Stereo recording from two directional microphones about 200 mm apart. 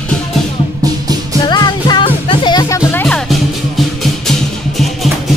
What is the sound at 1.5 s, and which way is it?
Music, 20° left (ahead or behind).